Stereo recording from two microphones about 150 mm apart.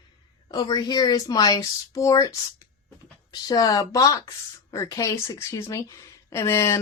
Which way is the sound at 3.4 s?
25° left (ahead or behind).